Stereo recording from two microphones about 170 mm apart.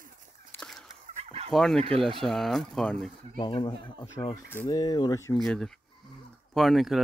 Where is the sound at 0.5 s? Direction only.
10° left (ahead or behind).